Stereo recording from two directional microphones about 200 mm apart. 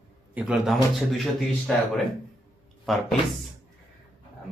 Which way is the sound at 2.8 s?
Centre (ahead or behind).